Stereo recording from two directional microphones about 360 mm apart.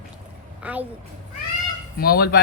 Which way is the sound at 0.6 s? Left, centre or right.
Centre.